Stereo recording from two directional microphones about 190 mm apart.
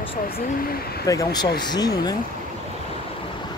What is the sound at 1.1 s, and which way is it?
Speech, 20° left (ahead or behind).